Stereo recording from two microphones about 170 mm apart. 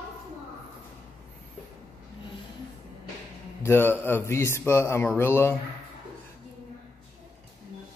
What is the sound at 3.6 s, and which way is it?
A man's voice, 15° left (ahead or behind).